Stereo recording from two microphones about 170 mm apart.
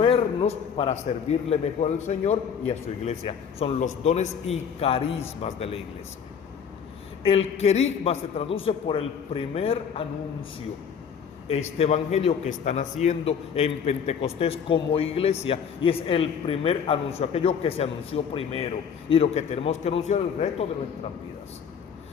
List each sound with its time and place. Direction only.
0.0 s a man's voice: 35° left (ahead or behind)
7.3 s a man's voice: 35° left (ahead or behind)
11.4 s a man's voice: 40° left (ahead or behind)